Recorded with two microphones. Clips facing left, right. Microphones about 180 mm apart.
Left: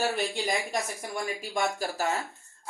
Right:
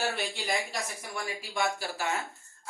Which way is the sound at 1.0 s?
45° left (ahead or behind).